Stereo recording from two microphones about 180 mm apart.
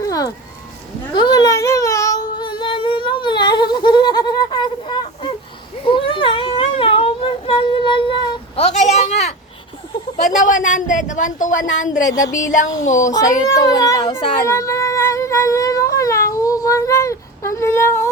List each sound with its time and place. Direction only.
0.0 s a sound: 20° left (ahead or behind)
5.8 s humming: 30° left (ahead or behind)
10.3 s a woman's voice: 45° left (ahead or behind)
13.5 s speech: 20° left (ahead or behind)
14.0 s speech: 30° left (ahead or behind)
14.4 s a sound: 15° left (ahead or behind)